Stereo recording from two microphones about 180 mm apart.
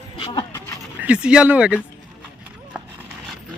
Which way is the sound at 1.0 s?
5° right (ahead or behind).